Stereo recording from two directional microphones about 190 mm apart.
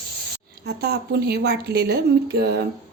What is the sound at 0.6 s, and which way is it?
A woman's voice, 60° right (ahead or behind).